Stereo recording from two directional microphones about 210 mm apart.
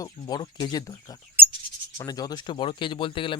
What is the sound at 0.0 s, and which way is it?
Speech, 20° left (ahead or behind).